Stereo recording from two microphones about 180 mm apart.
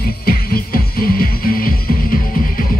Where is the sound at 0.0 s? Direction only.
55° left (ahead or behind).